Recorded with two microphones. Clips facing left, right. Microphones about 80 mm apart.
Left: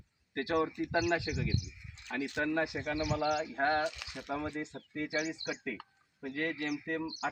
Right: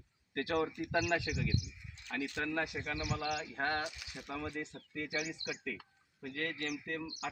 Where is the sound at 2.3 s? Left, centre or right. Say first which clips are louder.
Left 6 dB; left.